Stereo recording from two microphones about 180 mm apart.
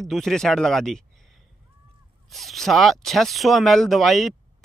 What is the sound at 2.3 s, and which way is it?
A man's voice, centre (ahead or behind).